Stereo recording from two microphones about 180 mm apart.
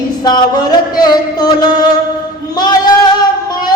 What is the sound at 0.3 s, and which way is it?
Music, 20° left (ahead or behind).